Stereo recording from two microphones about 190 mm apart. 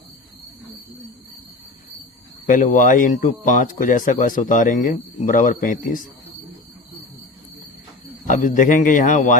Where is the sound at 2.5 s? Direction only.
45° left (ahead or behind).